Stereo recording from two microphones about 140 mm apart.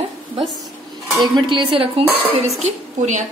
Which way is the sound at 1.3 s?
35° right (ahead or behind).